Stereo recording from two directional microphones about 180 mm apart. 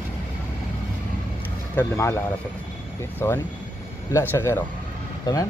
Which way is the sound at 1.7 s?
15° left (ahead or behind).